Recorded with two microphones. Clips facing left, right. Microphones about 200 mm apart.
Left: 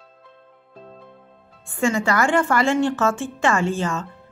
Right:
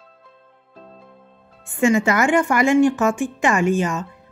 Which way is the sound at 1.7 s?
20° right (ahead or behind).